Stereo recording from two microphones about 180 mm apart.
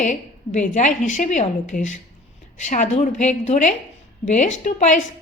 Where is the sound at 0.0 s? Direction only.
45° left (ahead or behind).